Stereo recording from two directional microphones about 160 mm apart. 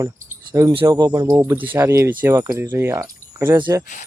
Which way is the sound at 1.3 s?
15° right (ahead or behind).